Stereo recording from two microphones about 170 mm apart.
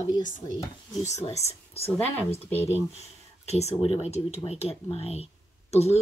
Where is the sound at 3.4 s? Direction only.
40° left (ahead or behind).